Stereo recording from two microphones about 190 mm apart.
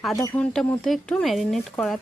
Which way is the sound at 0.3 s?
5° left (ahead or behind).